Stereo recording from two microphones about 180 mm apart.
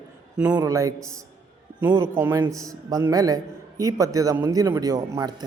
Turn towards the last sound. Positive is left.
turn(degrees=-20)  # may be behind; listen again after turning